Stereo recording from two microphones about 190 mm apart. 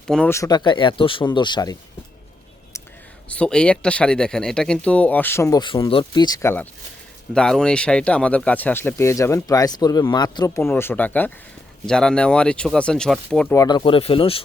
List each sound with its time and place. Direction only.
0.1 s speech: 10° left (ahead or behind)
3.2 s speech: 5° left (ahead or behind)
13.6 s speech: 20° left (ahead or behind)